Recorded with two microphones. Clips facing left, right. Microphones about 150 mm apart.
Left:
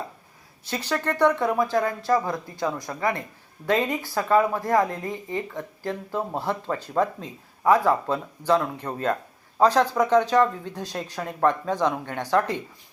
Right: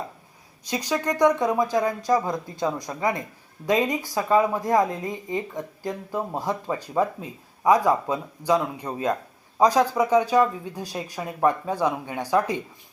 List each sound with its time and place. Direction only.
0.6 s speech: 15° right (ahead or behind)